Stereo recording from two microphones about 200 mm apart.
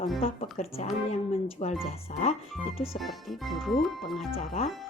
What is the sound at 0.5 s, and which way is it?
A woman's voice, 30° left (ahead or behind).